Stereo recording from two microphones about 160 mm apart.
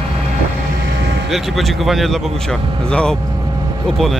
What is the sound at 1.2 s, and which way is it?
Speech, centre (ahead or behind).